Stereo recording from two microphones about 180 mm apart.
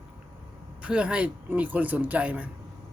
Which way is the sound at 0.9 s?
5° right (ahead or behind).